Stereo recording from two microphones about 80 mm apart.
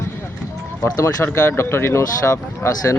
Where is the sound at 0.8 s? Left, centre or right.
Left.